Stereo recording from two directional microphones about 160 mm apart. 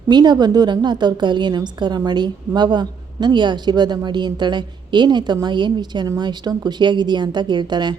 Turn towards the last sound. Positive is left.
turn(degrees=-25)  # may be behind; listen again after turning